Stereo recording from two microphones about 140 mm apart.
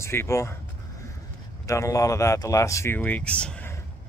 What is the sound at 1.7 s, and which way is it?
Speech, 20° left (ahead or behind).